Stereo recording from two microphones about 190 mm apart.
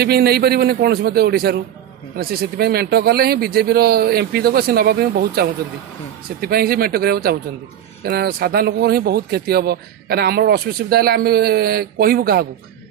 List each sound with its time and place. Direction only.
0.0 s a man's voice: 55° right (ahead or behind)